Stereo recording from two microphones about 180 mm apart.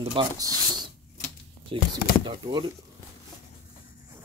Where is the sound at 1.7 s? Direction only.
30° right (ahead or behind).